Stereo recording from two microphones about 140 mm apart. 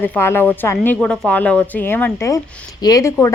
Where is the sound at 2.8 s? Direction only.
25° left (ahead or behind).